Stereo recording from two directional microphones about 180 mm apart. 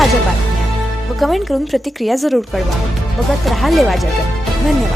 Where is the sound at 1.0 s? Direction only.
Centre (ahead or behind).